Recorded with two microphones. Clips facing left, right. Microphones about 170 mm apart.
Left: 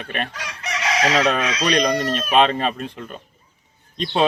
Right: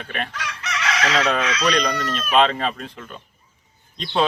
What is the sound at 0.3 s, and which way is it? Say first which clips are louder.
Chicken: even; 35° left (ahead or behind).